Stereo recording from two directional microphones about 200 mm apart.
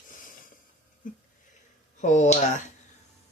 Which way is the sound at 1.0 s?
40° left (ahead or behind).